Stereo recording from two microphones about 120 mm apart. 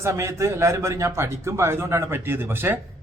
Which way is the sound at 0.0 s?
25° right (ahead or behind).